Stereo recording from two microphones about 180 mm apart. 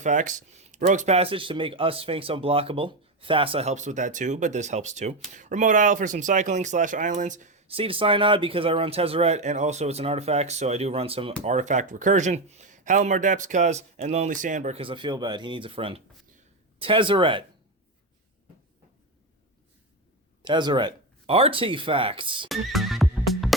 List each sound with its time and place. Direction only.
0.0 s speech: 45° right (ahead or behind); by 17.4 s 30° right (ahead or behind)
20.4 s speech: 25° right (ahead or behind)
22.4 s music: centre (ahead or behind)